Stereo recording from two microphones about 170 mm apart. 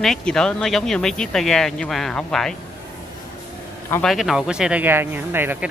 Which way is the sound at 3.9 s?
5° left (ahead or behind).